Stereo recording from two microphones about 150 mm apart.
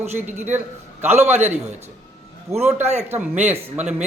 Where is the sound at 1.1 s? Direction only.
15° right (ahead or behind).